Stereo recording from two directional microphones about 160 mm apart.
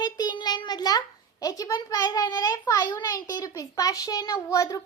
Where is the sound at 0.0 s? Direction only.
25° left (ahead or behind).